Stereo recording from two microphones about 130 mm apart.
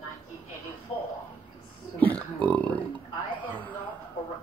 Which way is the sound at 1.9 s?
10° left (ahead or behind).